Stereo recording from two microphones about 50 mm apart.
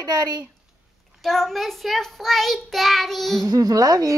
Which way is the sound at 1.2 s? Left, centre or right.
Centre.